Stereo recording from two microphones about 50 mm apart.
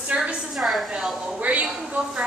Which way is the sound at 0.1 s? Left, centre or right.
Right.